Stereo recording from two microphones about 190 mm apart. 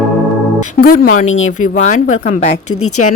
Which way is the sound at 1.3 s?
90° left.